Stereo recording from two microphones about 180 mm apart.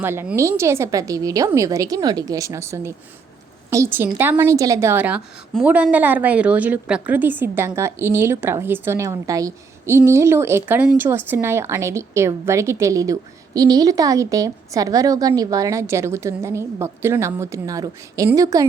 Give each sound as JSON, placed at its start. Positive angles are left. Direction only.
{"t": 0.0, "sound": "speech", "side_deg": -10}